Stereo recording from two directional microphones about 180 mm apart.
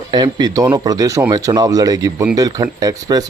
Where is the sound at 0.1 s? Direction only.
25° right (ahead or behind).